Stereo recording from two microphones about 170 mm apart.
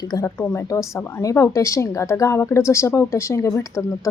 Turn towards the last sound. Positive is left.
turn(degrees=20)  # may be behind; listen again after turning